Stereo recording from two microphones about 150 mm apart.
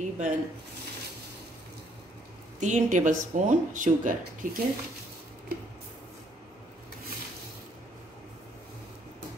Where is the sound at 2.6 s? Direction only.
55° right (ahead or behind).